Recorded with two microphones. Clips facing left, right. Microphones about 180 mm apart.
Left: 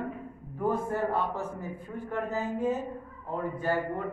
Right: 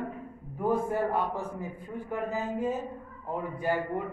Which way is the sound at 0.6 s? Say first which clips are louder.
Right 1 dB; 10° right (ahead or behind).